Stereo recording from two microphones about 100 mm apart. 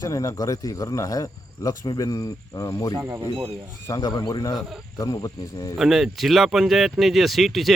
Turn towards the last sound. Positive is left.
turn(degrees=0)  # may be behind; listen again after turning